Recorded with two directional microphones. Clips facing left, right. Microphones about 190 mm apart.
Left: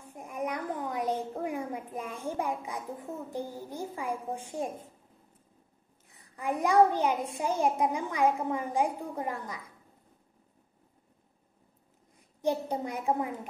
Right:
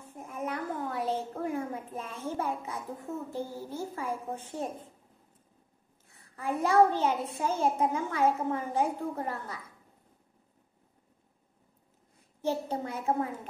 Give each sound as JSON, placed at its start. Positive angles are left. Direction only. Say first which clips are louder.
{"t": 0.0, "sound": "a sound", "louder": "left 2 dB", "side_deg": 15}
{"t": 6.1, "sound": "a child's voice", "louder": "even", "side_deg": 15}
{"t": 12.2, "sound": "a child's voice", "louder": "left 2 dB", "side_deg": 15}